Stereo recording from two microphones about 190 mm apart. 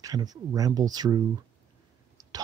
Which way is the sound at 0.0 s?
20° right (ahead or behind).